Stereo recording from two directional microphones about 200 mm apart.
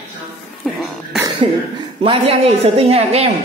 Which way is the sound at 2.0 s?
30° right (ahead or behind).